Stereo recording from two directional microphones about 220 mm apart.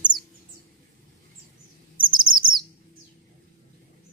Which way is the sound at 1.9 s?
20° right (ahead or behind).